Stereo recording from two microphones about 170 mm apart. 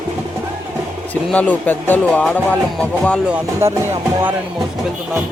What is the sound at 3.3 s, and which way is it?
Music, 15° right (ahead or behind).